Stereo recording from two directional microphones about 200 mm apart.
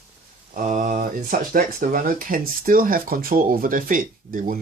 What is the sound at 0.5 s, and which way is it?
Speech, 40° right (ahead or behind).